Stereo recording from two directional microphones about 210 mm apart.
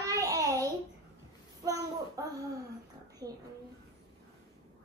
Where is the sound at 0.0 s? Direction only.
15° right (ahead or behind).